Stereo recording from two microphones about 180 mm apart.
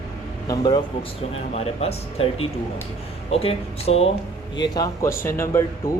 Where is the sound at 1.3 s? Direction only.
35° left (ahead or behind).